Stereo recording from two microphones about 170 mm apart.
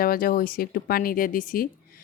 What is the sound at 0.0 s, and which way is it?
Speech, 60° left (ahead or behind).